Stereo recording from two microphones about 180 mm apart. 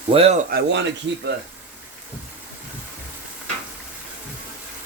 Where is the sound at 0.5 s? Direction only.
80° right.